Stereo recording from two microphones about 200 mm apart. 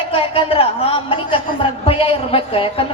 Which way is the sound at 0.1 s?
30° left (ahead or behind).